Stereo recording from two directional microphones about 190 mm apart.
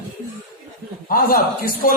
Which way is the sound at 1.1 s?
50° left (ahead or behind).